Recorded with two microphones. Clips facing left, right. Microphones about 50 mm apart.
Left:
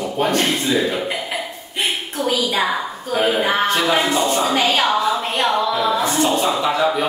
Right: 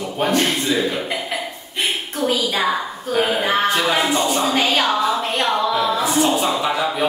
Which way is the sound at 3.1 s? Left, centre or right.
Centre.